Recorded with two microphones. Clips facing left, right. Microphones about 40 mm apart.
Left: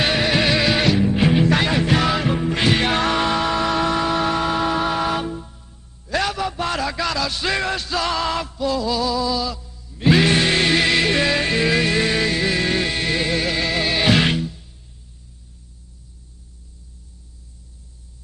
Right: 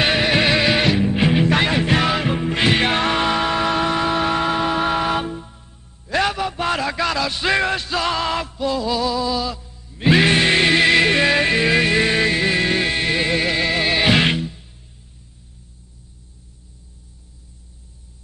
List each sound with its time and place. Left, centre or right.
0.0 s music: centre